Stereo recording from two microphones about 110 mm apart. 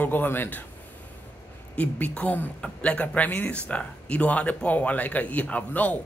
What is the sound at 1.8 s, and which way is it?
Speech, 15° left (ahead or behind).